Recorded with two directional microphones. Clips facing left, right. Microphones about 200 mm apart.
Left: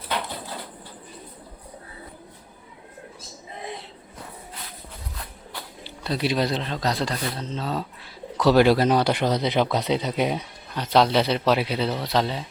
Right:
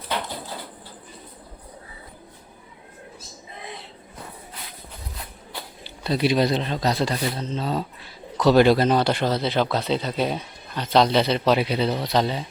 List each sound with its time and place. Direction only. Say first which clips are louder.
6.0 s speech: right 3 dB; centre (ahead or behind)